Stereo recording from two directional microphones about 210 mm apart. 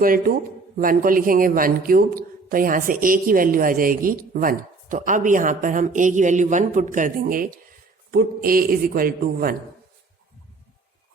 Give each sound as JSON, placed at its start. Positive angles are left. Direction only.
{"t": 0.0, "sound": "a man's voice", "side_deg": -45}